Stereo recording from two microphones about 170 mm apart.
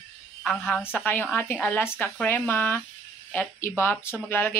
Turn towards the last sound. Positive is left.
turn(degrees=10)  # may be behind; listen again after turning